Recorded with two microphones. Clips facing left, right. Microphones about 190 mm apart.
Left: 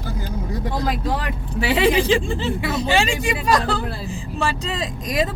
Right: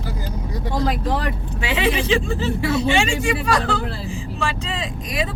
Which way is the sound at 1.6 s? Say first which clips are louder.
Left 4 dB; 35° left (ahead or behind).